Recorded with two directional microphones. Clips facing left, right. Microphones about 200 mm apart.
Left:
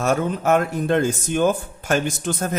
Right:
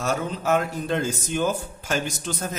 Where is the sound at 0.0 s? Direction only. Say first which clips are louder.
Left 5 dB; 55° left (ahead or behind).